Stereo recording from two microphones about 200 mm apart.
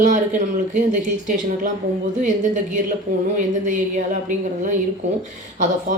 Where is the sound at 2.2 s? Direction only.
40° right (ahead or behind).